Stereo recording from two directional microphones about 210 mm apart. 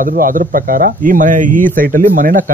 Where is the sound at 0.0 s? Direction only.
40° right (ahead or behind).